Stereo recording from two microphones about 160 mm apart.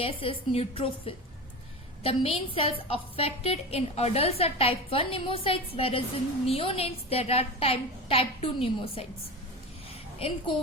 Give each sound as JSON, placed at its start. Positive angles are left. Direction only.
{"t": 0.0, "sound": "a woman's voice", "side_deg": 35}
{"t": 10.2, "sound": "a woman's voice", "side_deg": 35}